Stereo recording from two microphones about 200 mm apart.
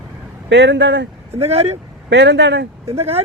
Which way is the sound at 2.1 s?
60° right (ahead or behind).